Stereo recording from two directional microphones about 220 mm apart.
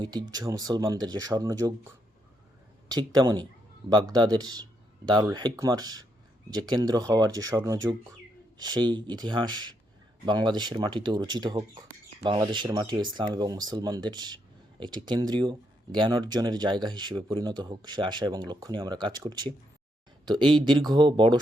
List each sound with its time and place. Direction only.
0.0 s speech: 20° right (ahead or behind)
2.9 s speech: 15° right (ahead or behind)